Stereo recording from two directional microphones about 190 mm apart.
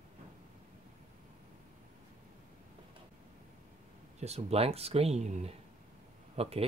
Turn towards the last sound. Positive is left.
turn(degrees=-30)  # may be behind; listen again after turning